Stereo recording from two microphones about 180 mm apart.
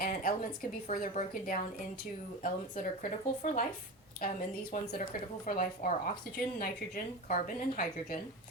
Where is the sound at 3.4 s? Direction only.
50° left (ahead or behind).